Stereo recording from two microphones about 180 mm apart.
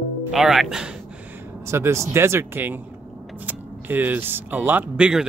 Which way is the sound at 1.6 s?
15° right (ahead or behind).